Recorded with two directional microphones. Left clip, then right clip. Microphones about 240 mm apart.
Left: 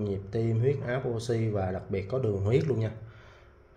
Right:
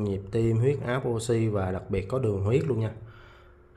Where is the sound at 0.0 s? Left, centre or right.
Centre.